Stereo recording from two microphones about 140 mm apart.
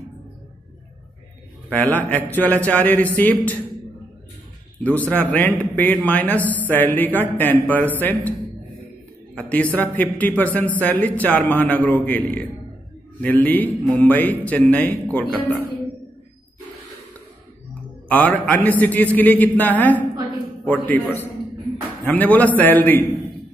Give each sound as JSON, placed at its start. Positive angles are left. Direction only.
{"t": 1.7, "sound": "a man's voice", "side_deg": 10}
{"t": 4.8, "sound": "a man's voice", "side_deg": 10}
{"t": 18.0, "sound": "a man's voice", "side_deg": 10}